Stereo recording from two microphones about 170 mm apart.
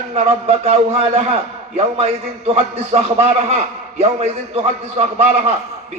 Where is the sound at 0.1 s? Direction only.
35° right (ahead or behind).